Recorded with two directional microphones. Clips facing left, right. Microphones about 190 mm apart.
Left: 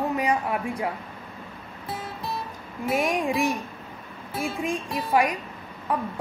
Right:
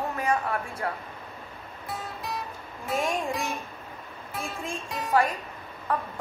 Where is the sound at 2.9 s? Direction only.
15° left (ahead or behind).